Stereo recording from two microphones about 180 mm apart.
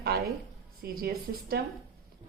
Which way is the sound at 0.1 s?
60° right (ahead or behind).